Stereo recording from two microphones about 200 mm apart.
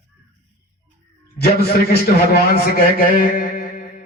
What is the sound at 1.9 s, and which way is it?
A man's voice, 50° left (ahead or behind).